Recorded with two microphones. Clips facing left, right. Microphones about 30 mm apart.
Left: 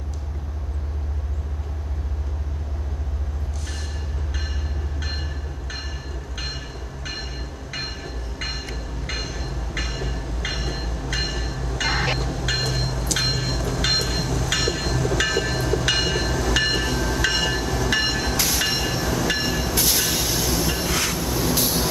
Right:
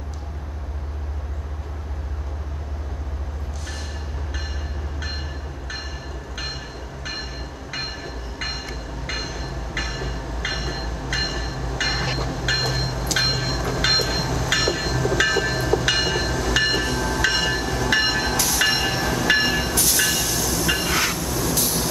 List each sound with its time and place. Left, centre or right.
6.3 s train: centre
7.7 s train: centre
19.7 s train: centre
20.6 s train: centre
21.2 s vehicle: centre